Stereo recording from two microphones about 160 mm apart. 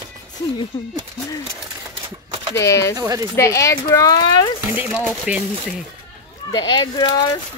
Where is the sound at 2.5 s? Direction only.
20° left (ahead or behind).